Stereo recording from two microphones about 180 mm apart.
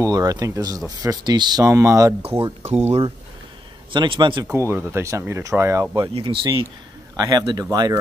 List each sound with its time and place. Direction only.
0.0 s speech: 20° right (ahead or behind)
2.2 s speech: 30° right (ahead or behind)
3.9 s speech: 25° right (ahead or behind)
4.5 s speech: 10° right (ahead or behind)
6.1 s speech: 30° right (ahead or behind)